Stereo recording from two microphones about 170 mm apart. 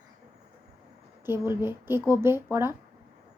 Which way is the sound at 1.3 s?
15° right (ahead or behind).